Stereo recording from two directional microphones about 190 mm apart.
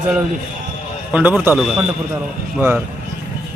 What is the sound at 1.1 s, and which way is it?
Speech, 10° right (ahead or behind).